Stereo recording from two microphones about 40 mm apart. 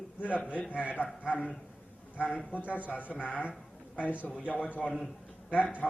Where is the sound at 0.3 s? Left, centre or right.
Left.